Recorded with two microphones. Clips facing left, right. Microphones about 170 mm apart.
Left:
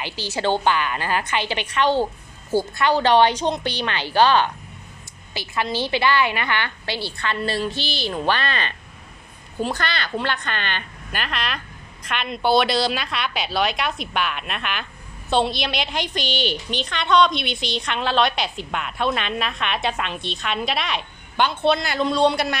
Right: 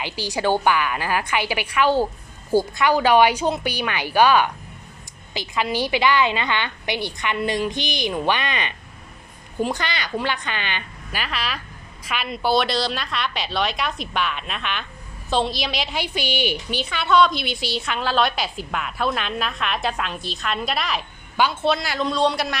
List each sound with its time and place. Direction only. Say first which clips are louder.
0.0 s a woman's voice: right 1 dB; 15° right (ahead or behind); by 22.6 s centre (ahead or behind)